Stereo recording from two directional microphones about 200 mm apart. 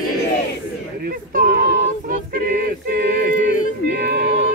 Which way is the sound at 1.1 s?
45° right (ahead or behind).